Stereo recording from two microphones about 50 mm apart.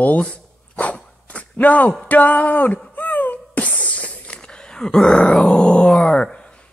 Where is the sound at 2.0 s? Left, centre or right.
Left.